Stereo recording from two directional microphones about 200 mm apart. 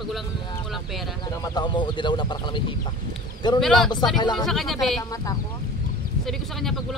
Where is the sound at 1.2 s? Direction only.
20° left (ahead or behind).